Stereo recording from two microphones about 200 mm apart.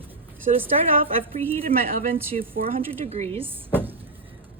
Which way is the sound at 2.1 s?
45° right (ahead or behind).